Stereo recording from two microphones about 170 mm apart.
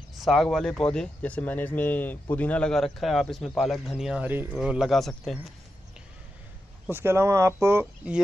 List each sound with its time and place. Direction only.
0.2 s a man's voice: centre (ahead or behind)
6.9 s speech: 15° right (ahead or behind)
7.8 s speech: 5° right (ahead or behind)